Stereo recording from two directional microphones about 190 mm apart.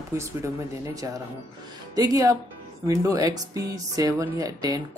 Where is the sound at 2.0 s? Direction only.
20° right (ahead or behind).